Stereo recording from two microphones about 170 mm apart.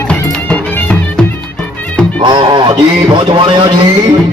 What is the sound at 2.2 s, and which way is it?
Music, 25° right (ahead or behind).